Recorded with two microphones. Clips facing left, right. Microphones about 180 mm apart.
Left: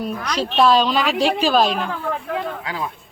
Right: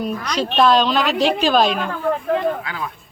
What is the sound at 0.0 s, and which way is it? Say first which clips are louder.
A woman's voice: right 1 dB; 5° left (ahead or behind).